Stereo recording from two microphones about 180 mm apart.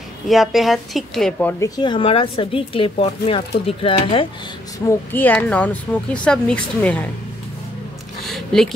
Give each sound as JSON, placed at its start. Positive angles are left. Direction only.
{"t": 0.3, "sound": "a woman's voice", "side_deg": 0}
{"t": 1.6, "sound": "speech", "side_deg": 25}
{"t": 4.7, "sound": "speech", "side_deg": 15}
{"t": 8.2, "sound": "a sound", "side_deg": 0}